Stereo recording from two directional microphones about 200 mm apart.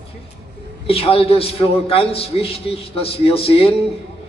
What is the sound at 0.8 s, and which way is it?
A man's voice, 30° left (ahead or behind).